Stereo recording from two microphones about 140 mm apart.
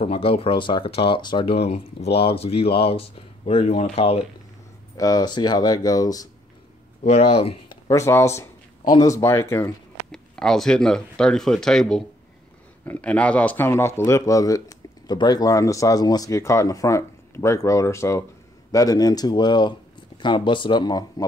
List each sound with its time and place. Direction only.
0.0 s speech: 45° left (ahead or behind)
1.6 s speech: 45° left (ahead or behind)
4.9 s speech: 25° left (ahead or behind)
7.0 s speech: 45° left (ahead or behind)
7.9 s speech: 20° left (ahead or behind)
10.1 s speech: 5° left (ahead or behind); by 21.3 s 30° left (ahead or behind)